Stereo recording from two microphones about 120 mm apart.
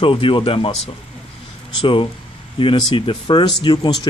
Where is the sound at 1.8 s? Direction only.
45° left (ahead or behind).